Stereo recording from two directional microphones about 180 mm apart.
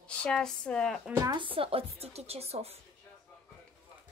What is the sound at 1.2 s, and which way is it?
Speech, 25° right (ahead or behind).